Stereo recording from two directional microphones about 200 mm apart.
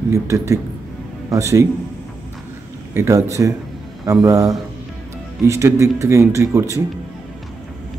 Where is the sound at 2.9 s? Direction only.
15° right (ahead or behind).